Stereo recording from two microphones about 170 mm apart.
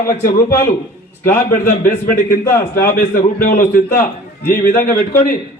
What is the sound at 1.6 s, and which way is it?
A man's voice, 55° left (ahead or behind).